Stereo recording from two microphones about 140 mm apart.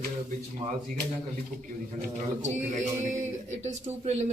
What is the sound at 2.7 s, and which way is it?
Speech, 55° right (ahead or behind).